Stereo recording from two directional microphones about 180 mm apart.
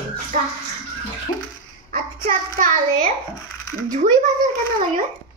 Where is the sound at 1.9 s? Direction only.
45° right (ahead or behind).